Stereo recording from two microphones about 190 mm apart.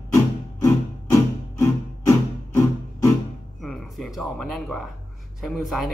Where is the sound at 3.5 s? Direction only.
Centre (ahead or behind).